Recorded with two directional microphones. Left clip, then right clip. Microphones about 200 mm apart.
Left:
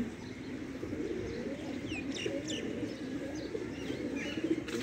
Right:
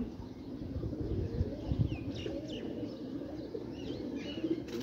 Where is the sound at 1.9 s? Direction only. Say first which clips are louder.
Left 4 dB; 50° right (ahead or behind).